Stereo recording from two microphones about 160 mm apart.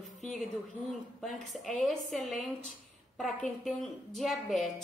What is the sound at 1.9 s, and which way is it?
A woman's voice, centre (ahead or behind).